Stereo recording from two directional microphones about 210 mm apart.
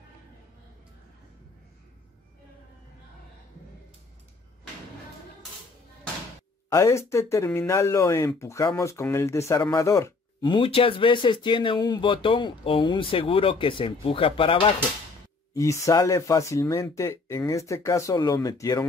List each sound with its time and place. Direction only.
6.7 s speech: 15° left (ahead or behind)
15.5 s speech: 15° left (ahead or behind)